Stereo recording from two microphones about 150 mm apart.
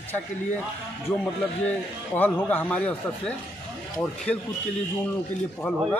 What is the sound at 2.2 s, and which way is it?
Speech, 10° left (ahead or behind).